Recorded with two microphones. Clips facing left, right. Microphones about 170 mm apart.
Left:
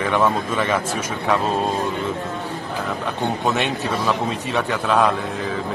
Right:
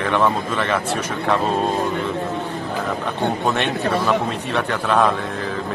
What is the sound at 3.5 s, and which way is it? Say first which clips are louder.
A man's voice: right 1 dB; centre (ahead or behind).